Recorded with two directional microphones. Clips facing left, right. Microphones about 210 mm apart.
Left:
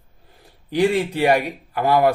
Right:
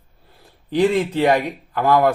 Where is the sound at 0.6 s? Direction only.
10° left (ahead or behind).